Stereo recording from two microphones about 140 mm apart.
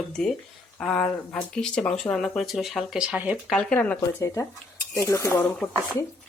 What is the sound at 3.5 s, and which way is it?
Speech, 5° left (ahead or behind).